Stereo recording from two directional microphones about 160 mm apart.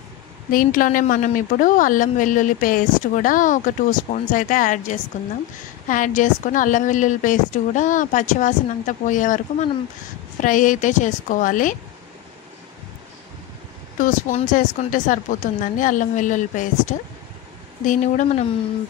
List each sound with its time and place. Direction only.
0.5 s a woman's voice: 60° left (ahead or behind)
13.9 s a woman's voice: 55° left (ahead or behind)